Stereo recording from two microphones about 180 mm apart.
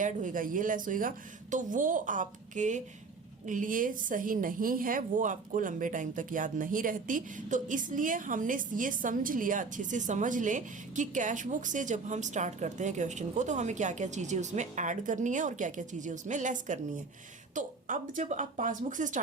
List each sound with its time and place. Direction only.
0.0 s a woman's voice: 45° right (ahead or behind)